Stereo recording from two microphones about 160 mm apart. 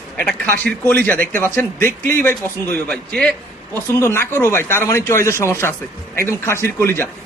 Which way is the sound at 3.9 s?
15° left (ahead or behind).